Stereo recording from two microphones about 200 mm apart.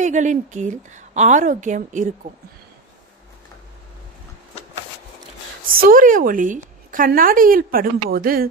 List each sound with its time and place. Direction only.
0.0 s a woman's voice: 40° right (ahead or behind)
5.7 s a woman's voice: 45° right (ahead or behind)